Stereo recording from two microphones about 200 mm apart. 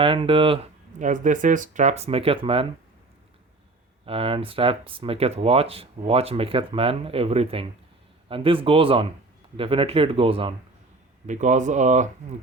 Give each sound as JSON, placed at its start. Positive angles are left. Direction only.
{"t": 0.0, "sound": "speech", "side_deg": -25}
{"t": 4.0, "sound": "speech", "side_deg": -30}
{"t": 11.3, "sound": "speech", "side_deg": -35}